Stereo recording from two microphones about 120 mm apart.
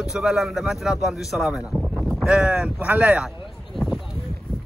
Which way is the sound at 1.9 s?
Centre (ahead or behind).